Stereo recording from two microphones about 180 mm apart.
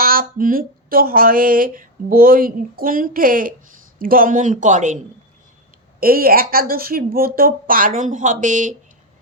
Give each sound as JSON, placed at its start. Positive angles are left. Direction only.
{"t": 0.0, "sound": "speech", "side_deg": -55}
{"t": 6.0, "sound": "speech", "side_deg": -55}